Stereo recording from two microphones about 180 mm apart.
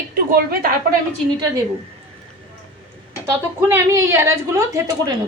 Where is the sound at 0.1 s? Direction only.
55° right (ahead or behind).